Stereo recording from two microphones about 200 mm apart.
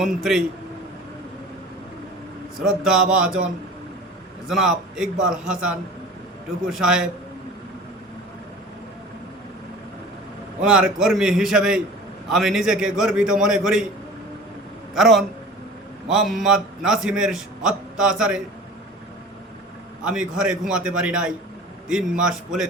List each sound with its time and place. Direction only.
0.0 s a man's voice: centre (ahead or behind)
2.6 s a man's voice: centre (ahead or behind)
10.6 s a man's voice: 5° right (ahead or behind)
14.9 s a man's voice: centre (ahead or behind)
20.1 s a man's voice: 5° right (ahead or behind)